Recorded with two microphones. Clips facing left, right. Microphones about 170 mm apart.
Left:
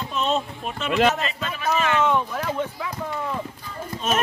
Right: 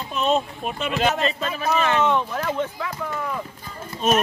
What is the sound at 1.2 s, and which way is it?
Speech, 35° right (ahead or behind).